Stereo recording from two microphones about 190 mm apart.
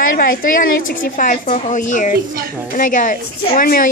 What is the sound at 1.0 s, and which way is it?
A woman's voice, 45° left (ahead or behind).